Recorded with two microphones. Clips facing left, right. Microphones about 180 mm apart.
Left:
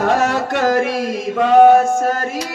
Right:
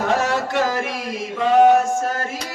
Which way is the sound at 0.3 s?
55° left (ahead or behind).